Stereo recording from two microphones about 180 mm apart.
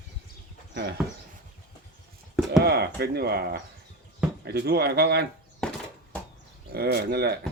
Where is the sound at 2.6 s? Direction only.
60° right (ahead or behind).